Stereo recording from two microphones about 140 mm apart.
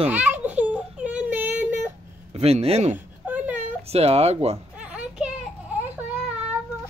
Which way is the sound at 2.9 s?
10° right (ahead or behind).